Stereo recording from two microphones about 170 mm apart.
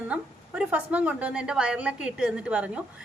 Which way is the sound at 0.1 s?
5° right (ahead or behind).